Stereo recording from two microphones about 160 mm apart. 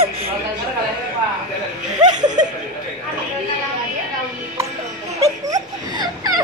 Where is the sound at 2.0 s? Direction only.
25° right (ahead or behind).